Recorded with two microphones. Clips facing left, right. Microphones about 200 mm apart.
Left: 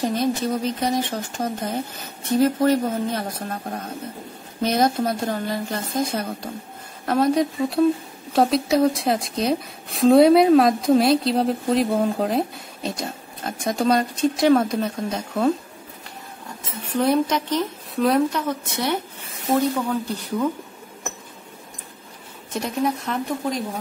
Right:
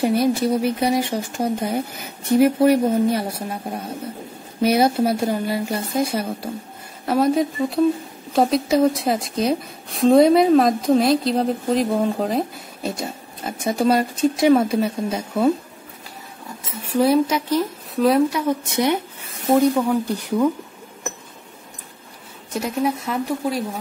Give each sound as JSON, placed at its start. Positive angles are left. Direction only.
{"t": 0.0, "sound": "speech", "side_deg": -10}
{"t": 16.8, "sound": "speech", "side_deg": -5}
{"t": 18.5, "sound": "speech", "side_deg": -15}
{"t": 22.5, "sound": "speech", "side_deg": -5}